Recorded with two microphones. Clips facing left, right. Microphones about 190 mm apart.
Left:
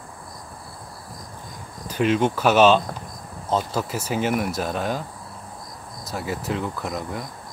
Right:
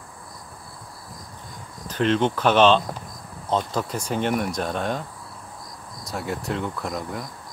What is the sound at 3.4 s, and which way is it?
Speech, 5° left (ahead or behind).